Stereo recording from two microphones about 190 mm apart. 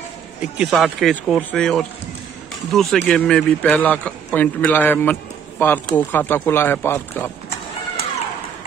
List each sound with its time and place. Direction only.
0.4 s a man's voice: centre (ahead or behind)